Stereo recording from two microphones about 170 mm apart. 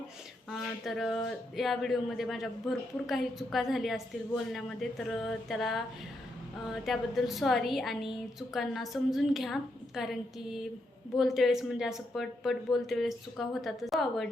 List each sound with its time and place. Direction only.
0.5 s a woman's voice: centre (ahead or behind)
6.8 s a woman's voice: centre (ahead or behind)